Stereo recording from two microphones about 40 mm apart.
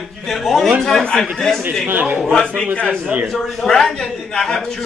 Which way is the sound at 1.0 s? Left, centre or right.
Left.